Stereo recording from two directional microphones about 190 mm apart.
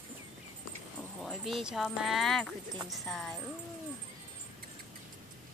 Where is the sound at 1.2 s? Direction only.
Centre (ahead or behind).